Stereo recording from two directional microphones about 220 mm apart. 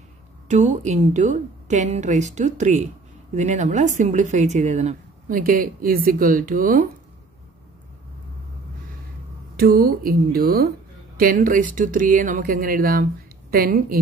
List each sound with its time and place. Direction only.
0.5 s speech: 30° right (ahead or behind)
9.6 s speech: 45° right (ahead or behind)